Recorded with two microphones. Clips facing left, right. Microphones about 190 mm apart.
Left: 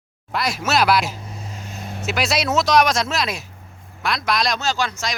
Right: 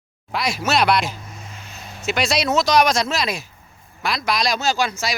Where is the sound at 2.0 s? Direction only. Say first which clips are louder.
Right 1 dB; centre (ahead or behind).